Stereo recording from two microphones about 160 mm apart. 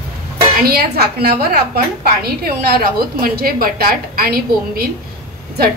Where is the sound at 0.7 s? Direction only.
75° right (ahead or behind).